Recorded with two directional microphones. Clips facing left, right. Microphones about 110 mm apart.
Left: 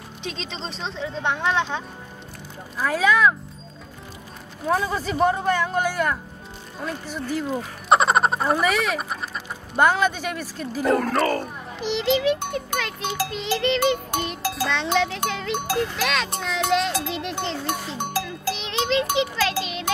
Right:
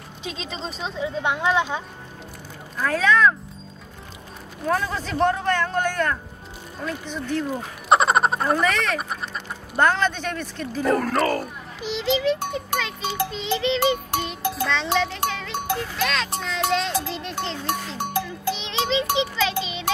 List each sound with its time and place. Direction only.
0.2 s speech: 5° right (ahead or behind)
2.8 s speech: 10° left (ahead or behind)
4.6 s a child's voice: 10° left (ahead or behind)
18.5 s music: centre (ahead or behind)